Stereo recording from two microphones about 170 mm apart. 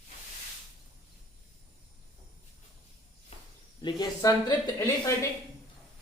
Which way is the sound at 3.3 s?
40° left (ahead or behind).